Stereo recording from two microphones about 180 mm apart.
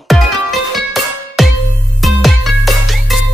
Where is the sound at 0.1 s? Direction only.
Centre (ahead or behind).